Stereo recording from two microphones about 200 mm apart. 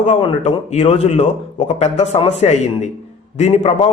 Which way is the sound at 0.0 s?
30° left (ahead or behind).